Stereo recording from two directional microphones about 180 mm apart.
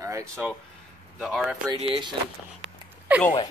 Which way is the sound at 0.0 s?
15° right (ahead or behind).